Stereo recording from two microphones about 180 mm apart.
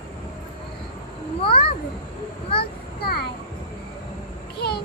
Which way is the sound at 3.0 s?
60° left (ahead or behind).